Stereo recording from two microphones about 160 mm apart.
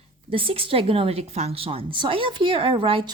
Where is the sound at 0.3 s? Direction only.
35° right (ahead or behind).